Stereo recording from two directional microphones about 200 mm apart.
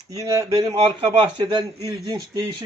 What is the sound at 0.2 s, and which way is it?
Speech, 15° right (ahead or behind).